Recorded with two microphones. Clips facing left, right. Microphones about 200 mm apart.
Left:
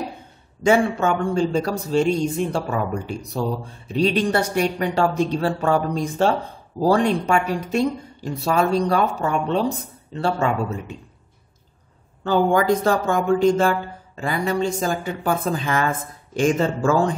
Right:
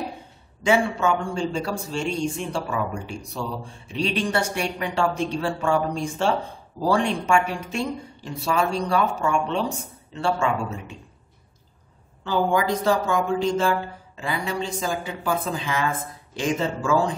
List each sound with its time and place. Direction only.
0.7 s speech: 55° left (ahead or behind)
1.3 s speech: 40° left (ahead or behind)
12.3 s speech: 50° left (ahead or behind)